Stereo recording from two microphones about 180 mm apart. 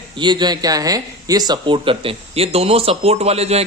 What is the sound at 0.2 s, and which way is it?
Speech, 25° right (ahead or behind).